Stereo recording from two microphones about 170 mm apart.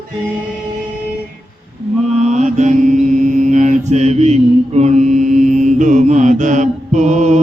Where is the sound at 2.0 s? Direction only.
40° right (ahead or behind).